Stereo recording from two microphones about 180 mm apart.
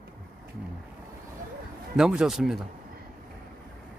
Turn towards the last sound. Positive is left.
turn(degrees=0)  # may be behind; listen again after turning